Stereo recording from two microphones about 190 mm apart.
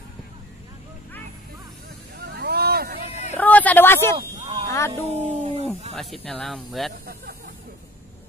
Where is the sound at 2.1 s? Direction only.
60° right (ahead or behind).